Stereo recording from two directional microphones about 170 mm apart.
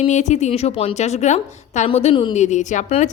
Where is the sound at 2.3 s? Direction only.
45° left (ahead or behind).